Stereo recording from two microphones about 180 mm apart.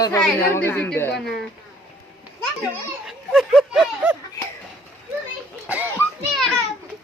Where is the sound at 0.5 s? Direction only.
10° left (ahead or behind).